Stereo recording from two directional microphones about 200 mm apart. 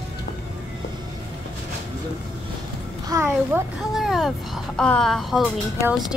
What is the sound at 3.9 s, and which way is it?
Speech, centre (ahead or behind).